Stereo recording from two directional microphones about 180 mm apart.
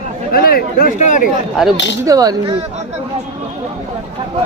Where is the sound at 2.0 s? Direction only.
20° right (ahead or behind).